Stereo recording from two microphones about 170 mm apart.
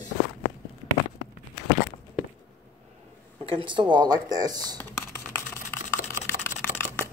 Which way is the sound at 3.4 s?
30° right (ahead or behind).